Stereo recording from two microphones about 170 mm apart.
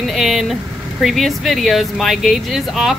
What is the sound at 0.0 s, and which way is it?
Speech, centre (ahead or behind).